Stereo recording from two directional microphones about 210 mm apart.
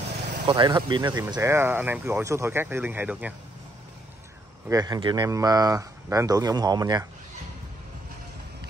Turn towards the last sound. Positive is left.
turn(degrees=-20)  # may be behind; listen again after turning